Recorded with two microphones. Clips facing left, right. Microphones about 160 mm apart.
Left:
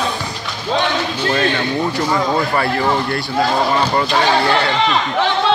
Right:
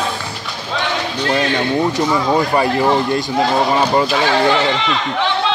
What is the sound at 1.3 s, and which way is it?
Speech, 15° right (ahead or behind).